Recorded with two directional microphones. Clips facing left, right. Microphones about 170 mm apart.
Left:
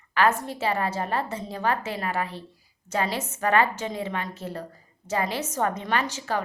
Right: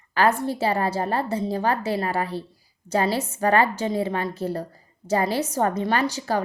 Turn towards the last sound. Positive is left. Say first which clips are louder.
# right 4 dB
turn(degrees=-35)  # may be behind; listen again after turning